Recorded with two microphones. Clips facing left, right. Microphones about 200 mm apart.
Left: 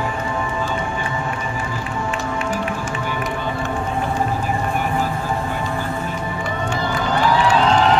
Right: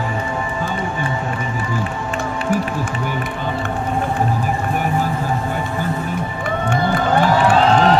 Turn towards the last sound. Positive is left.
turn(degrees=-55)  # may be behind; listen again after turning